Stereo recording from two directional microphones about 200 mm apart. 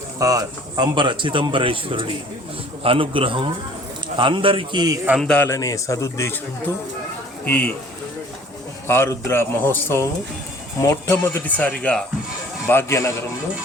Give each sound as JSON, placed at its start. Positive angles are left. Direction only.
{"t": 0.2, "sound": "a man's voice", "side_deg": -15}
{"t": 5.0, "sound": "a man's voice", "side_deg": 0}
{"t": 8.9, "sound": "a man's voice", "side_deg": 10}